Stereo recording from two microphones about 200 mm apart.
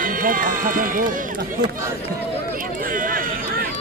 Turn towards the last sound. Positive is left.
turn(degrees=-45)  # may be behind; listen again after turning